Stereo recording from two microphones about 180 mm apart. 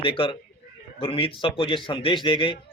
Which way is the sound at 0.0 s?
30° left (ahead or behind).